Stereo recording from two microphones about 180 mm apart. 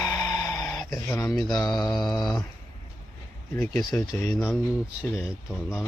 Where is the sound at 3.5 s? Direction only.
15° left (ahead or behind); by 5.8 s 5° right (ahead or behind).